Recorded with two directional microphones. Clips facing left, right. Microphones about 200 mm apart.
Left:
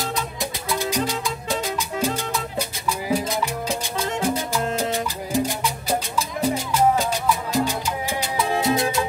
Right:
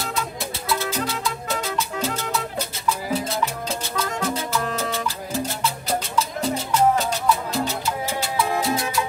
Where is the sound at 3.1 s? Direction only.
15° left (ahead or behind).